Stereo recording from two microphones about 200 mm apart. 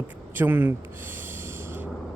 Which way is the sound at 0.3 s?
10° right (ahead or behind).